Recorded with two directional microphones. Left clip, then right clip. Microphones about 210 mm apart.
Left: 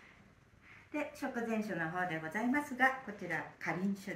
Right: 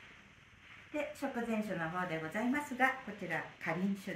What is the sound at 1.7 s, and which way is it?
A woman's voice, 45° right (ahead or behind).